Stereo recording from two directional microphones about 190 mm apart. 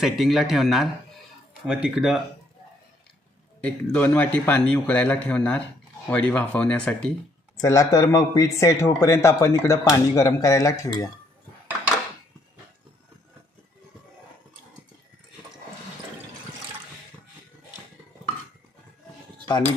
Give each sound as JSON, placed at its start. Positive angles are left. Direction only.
{"t": 0.0, "sound": "speech", "side_deg": 0}
{"t": 3.6, "sound": "a man's voice", "side_deg": 10}
{"t": 7.5, "sound": "a man's voice", "side_deg": 15}